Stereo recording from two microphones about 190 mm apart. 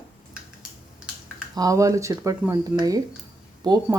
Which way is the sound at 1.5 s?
20° right (ahead or behind).